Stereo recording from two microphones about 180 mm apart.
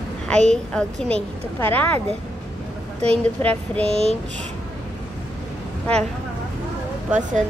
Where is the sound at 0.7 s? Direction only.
5° left (ahead or behind).